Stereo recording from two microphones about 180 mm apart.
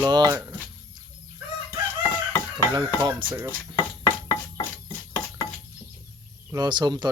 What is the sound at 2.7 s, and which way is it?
Speech, 25° right (ahead or behind).